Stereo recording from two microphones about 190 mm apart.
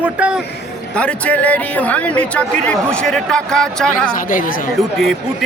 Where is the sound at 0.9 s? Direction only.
5° left (ahead or behind).